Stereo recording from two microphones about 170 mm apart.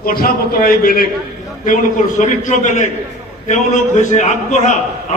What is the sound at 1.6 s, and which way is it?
A man's voice, 50° left (ahead or behind).